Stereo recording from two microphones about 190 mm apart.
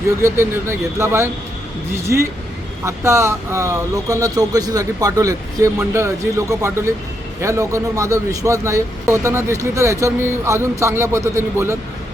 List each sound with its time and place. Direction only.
0.2 s speech: 15° right (ahead or behind)
2.8 s speech: 15° right (ahead or behind)